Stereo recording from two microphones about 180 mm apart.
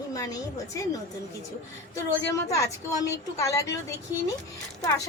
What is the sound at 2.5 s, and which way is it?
A woman's voice, 15° left (ahead or behind).